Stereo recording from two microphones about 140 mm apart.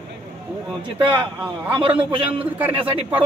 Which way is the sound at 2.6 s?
10° right (ahead or behind).